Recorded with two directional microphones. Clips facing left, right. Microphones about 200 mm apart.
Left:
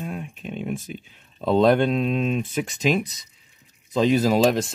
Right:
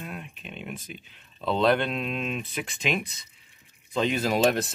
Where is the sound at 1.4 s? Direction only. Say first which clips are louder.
Left 6 dB; 45° left (ahead or behind).